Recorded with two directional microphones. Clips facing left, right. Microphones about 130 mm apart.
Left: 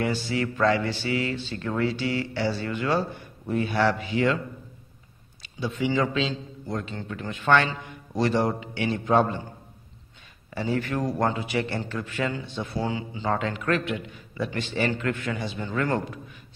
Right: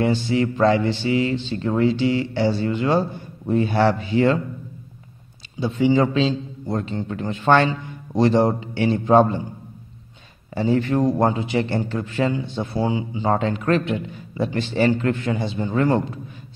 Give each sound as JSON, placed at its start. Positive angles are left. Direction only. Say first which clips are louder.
{"t": 0.0, "sound": "speech", "louder": "right 6 dB", "side_deg": -25}
{"t": 5.6, "sound": "a man's voice", "louder": "right 7 dB", "side_deg": -25}
{"t": 10.5, "sound": "speech", "louder": "right 7 dB", "side_deg": -25}
{"t": 12.8, "sound": "a man's voice", "louder": "right 8 dB", "side_deg": -15}
{"t": 13.3, "sound": "speech", "louder": "right 5 dB", "side_deg": -30}